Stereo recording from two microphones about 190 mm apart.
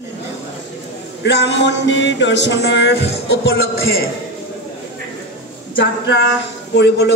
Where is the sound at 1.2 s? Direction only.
65° left (ahead or behind).